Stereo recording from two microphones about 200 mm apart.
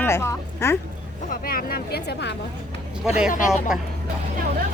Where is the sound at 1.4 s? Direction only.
45° left (ahead or behind).